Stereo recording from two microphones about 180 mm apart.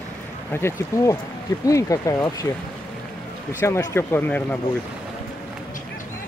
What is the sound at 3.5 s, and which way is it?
Speech, 15° left (ahead or behind).